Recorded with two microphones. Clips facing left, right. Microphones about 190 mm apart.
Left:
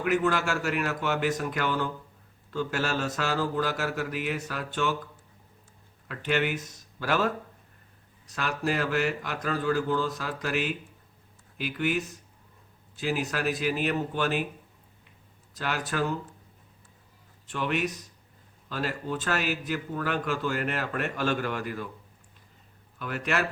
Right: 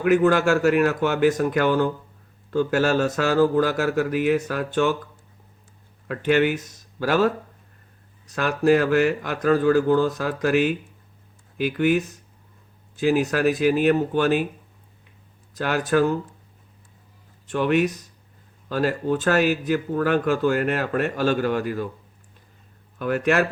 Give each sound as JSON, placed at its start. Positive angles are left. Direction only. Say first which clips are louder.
{"t": 0.1, "sound": "a man's voice", "louder": "right 9 dB", "side_deg": -50}
{"t": 6.1, "sound": "a man's voice", "louder": "right 8 dB", "side_deg": -50}
{"t": 8.4, "sound": "a man's voice", "louder": "right 10 dB", "side_deg": -50}
{"t": 15.5, "sound": "a man's voice", "louder": "right 9 dB", "side_deg": -50}
{"t": 17.5, "sound": "a man's voice", "louder": "right 9 dB", "side_deg": -50}
{"t": 23.0, "sound": "a man's voice", "louder": "right 9 dB", "side_deg": -50}